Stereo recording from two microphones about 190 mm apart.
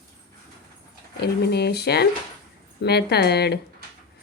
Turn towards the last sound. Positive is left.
turn(degrees=60)  # may be behind; listen again after turning